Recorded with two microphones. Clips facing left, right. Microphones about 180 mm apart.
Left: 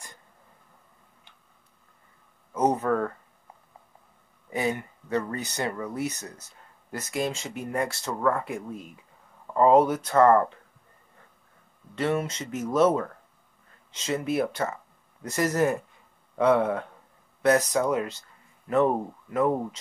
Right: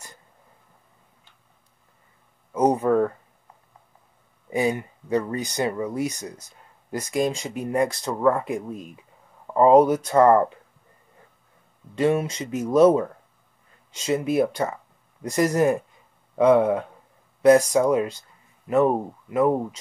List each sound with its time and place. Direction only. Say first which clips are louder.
2.5 s a sound: right 5 dB; 10° right (ahead or behind)
4.5 s speech: right 5 dB; 15° right (ahead or behind)
11.9 s speech: right 5 dB; 15° right (ahead or behind)